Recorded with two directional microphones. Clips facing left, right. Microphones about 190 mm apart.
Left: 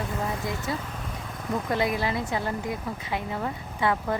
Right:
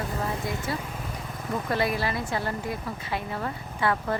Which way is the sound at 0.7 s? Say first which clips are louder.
Left 1 dB; 20° left (ahead or behind).